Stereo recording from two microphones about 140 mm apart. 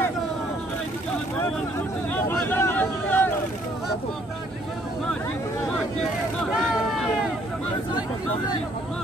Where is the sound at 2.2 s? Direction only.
15° left (ahead or behind).